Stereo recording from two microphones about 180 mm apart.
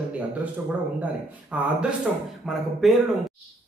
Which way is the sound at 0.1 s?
10° right (ahead or behind).